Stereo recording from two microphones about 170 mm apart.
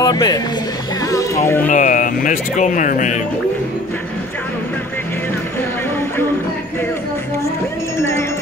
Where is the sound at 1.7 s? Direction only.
50° left (ahead or behind).